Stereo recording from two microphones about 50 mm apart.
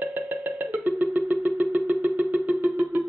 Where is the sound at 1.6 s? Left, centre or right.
Right.